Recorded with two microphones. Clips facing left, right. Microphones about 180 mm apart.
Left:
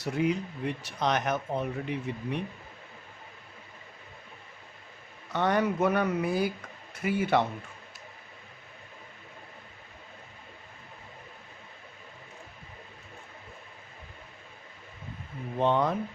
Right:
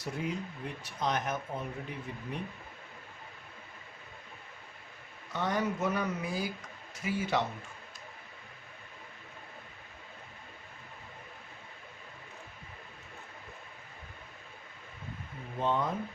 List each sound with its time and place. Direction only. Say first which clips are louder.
0.0 s speech: left 8 dB; 75° left (ahead or behind)
5.3 s speech: left 5 dB; 65° left (ahead or behind)
15.5 s speech: left 6 dB; 75° left (ahead or behind)